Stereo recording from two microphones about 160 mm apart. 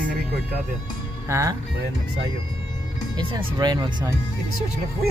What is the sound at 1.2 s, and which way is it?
Speech, 15° right (ahead or behind).